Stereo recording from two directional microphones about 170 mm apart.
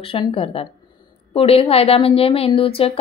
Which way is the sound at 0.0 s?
30° left (ahead or behind).